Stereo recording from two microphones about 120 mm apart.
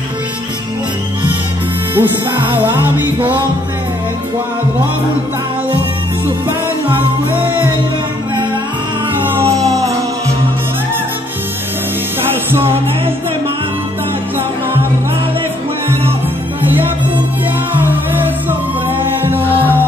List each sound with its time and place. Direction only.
2.0 s music: 15° right (ahead or behind)
6.9 s music: 15° right (ahead or behind)
9.2 s a sound: 20° right (ahead or behind)
9.7 s music: 30° right (ahead or behind)
12.4 s music: 20° right (ahead or behind)
19.2 s music: 15° right (ahead or behind)